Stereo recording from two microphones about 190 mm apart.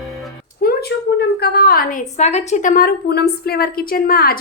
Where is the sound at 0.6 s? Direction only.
50° left (ahead or behind).